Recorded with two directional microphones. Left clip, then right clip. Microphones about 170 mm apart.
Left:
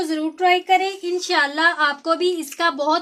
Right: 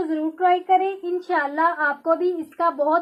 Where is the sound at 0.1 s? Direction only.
30° left (ahead or behind).